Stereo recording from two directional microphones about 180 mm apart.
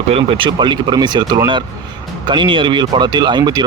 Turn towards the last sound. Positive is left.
turn(degrees=-25)  # may be behind; listen again after turning